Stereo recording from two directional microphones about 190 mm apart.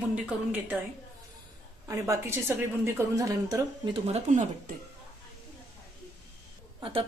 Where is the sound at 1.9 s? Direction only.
15° right (ahead or behind).